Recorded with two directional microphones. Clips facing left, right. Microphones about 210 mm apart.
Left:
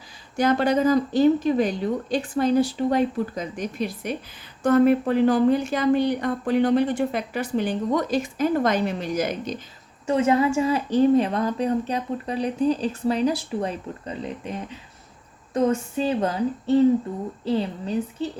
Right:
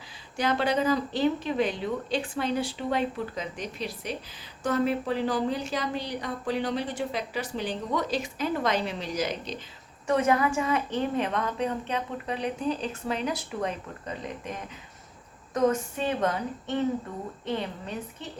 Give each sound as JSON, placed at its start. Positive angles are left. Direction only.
{"t": 0.3, "sound": "a woman's voice", "side_deg": 45}
{"t": 10.1, "sound": "a woman's voice", "side_deg": 25}